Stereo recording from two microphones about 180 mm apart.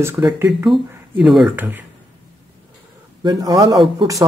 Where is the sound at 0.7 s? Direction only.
Centre (ahead or behind).